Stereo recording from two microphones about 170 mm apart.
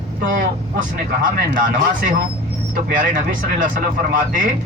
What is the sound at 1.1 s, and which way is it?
Speech, 65° right (ahead or behind).